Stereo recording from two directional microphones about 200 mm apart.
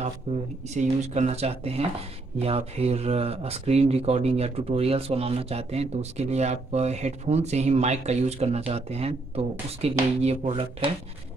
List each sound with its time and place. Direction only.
0.3 s speech: 30° right (ahead or behind)